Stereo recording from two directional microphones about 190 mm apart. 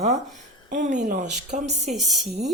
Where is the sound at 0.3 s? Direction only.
40° right (ahead or behind).